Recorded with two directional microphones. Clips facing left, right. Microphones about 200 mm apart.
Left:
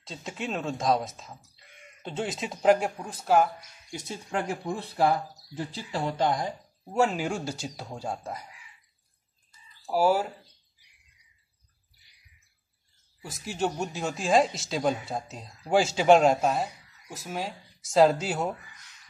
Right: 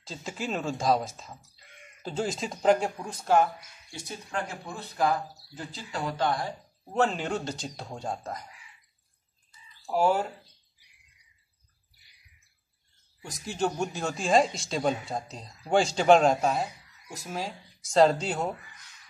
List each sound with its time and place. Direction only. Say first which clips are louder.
0.0 s speech: even; centre (ahead or behind)
3.9 s speech: left 3 dB; 20° left (ahead or behind)
6.8 s speech: left 1 dB; 10° left (ahead or behind)
9.8 s speech: left 1 dB; 5° left (ahead or behind)
13.2 s speech: even; centre (ahead or behind)